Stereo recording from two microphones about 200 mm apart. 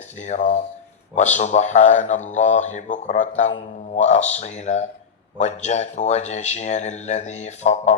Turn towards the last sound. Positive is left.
turn(degrees=35)  # may be behind; listen again after turning